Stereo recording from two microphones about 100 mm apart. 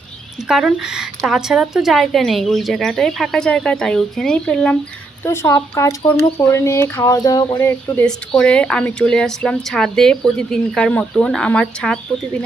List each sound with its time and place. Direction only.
0.4 s a woman's voice: 5° right (ahead or behind)
5.2 s speech: 25° left (ahead or behind)
7.6 s speech: 25° left (ahead or behind)
8.0 s a woman's voice: 10° left (ahead or behind)